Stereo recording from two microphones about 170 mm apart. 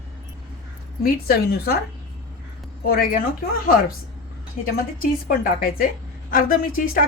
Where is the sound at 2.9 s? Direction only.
60° left (ahead or behind).